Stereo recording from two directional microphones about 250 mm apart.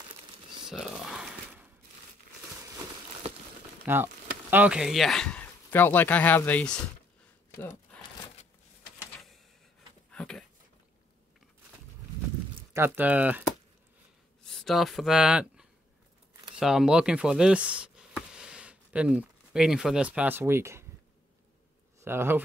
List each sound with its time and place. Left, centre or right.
0.7 s a sound: centre
3.8 s speech: centre
10.1 s a sound: centre
12.7 s speech: centre
14.4 s speech: centre
22.0 s speech: centre